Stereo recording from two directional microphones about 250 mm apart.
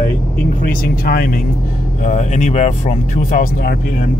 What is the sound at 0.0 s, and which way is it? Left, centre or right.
Speech, left.